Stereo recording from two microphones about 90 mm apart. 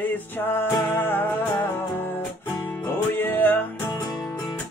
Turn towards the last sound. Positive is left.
turn(degrees=20)  # may be behind; listen again after turning